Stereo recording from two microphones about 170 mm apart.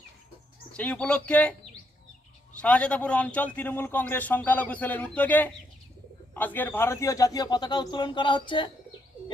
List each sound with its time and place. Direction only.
0.7 s a man's voice: 5° left (ahead or behind)
2.6 s a man's voice: 5° left (ahead or behind); by 8.7 s 30° left (ahead or behind)